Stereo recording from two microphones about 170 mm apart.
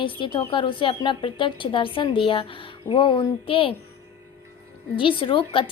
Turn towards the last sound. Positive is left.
turn(degrees=30)  # may be behind; listen again after turning